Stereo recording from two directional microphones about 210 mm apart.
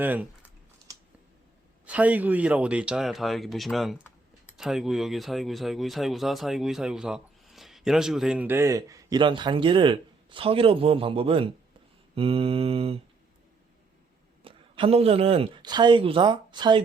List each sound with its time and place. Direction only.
0.0 s speech: 10° right (ahead or behind)
1.8 s speech: 5° right (ahead or behind); by 11.4 s 25° right (ahead or behind)
12.1 s mantra: 25° right (ahead or behind)
14.4 s speech: 25° right (ahead or behind)